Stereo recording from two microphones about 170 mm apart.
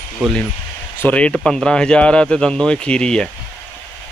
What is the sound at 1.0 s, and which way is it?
Speech, 5° left (ahead or behind).